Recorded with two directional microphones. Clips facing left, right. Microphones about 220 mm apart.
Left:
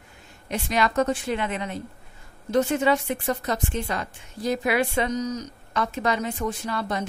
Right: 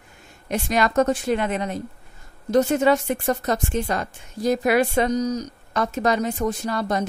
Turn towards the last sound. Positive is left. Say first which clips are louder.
# right 4 dB
turn(degrees=-40)  # may be behind; listen again after turning